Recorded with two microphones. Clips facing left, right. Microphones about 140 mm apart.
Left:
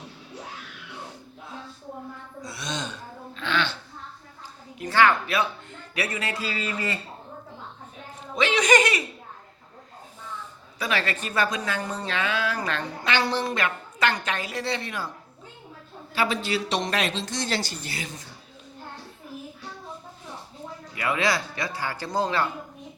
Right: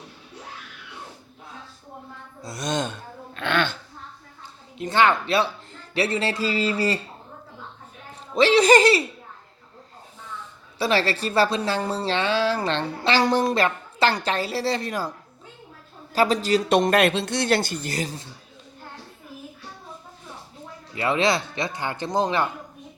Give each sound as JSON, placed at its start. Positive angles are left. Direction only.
{"t": 2.4, "sound": "gasp", "side_deg": -45}
{"t": 4.8, "sound": "speech", "side_deg": -20}
{"t": 8.4, "sound": "a woman's voice", "side_deg": -35}
{"t": 10.8, "sound": "a woman's voice", "side_deg": -30}
{"t": 13.2, "sound": "a woman's voice", "side_deg": -45}
{"t": 16.1, "sound": "speech", "side_deg": -40}
{"t": 20.9, "sound": "speech", "side_deg": -25}